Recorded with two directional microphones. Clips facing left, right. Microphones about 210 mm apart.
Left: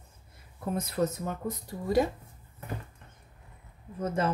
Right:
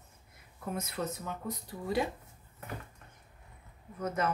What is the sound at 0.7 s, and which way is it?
Speech, 35° left (ahead or behind).